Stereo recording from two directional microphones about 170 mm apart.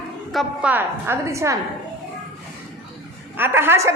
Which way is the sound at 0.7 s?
15° right (ahead or behind).